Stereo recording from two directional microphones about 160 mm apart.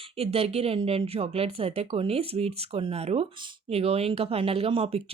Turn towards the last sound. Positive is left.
turn(degrees=-35)  # may be behind; listen again after turning